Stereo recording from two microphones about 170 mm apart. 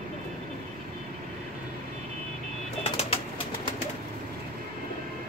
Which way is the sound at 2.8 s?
35° left (ahead or behind).